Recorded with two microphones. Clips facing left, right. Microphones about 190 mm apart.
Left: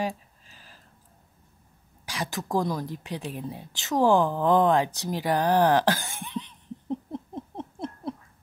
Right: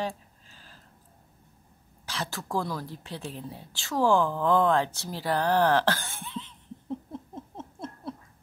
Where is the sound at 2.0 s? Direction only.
15° left (ahead or behind).